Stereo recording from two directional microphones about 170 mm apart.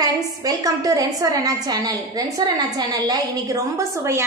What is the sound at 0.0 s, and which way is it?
A woman's voice, 20° right (ahead or behind).